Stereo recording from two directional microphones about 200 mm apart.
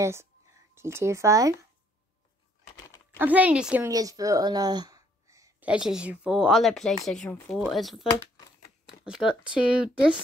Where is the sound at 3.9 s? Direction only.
20° right (ahead or behind).